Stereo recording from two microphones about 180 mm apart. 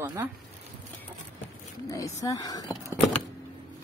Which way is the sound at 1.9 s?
20° left (ahead or behind).